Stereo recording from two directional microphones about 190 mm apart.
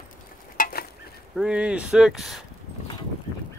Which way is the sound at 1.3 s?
5° right (ahead or behind).